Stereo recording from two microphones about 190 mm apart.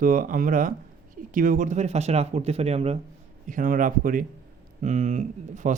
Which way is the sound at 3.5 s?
45° right (ahead or behind).